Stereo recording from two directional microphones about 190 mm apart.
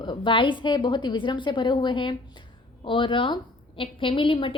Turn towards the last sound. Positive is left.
turn(degrees=25)  # may be behind; listen again after turning